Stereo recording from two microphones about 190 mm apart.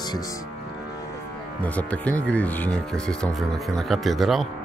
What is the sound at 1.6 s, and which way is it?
Speech, 5° left (ahead or behind).